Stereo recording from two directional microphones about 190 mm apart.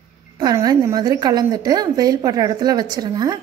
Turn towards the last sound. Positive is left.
turn(degrees=-20)  # may be behind; listen again after turning